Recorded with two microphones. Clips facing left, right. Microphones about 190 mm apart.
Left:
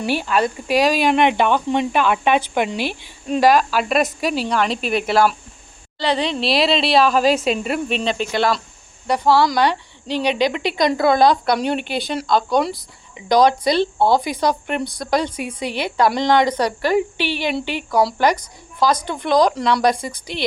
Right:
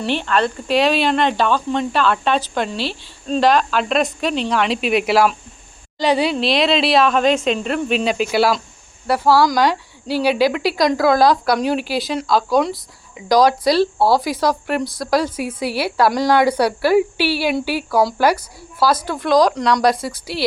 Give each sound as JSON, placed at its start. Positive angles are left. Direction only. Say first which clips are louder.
{"t": 0.0, "sound": "a woman's voice", "louder": "even", "side_deg": 10}
{"t": 6.4, "sound": "speech", "louder": "right 1 dB", "side_deg": 0}